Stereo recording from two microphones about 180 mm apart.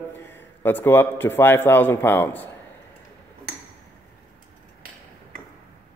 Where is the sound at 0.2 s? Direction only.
10° left (ahead or behind).